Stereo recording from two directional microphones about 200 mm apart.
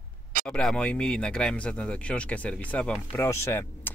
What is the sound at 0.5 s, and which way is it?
Speech, 5° left (ahead or behind).